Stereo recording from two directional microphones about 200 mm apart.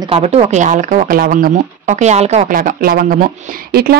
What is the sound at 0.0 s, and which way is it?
Speech, 30° right (ahead or behind).